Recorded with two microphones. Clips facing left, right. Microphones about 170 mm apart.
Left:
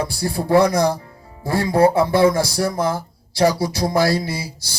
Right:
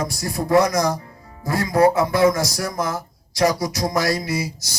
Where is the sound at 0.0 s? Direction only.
30° left (ahead or behind).